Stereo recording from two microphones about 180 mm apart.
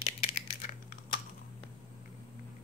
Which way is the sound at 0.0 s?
35° left (ahead or behind).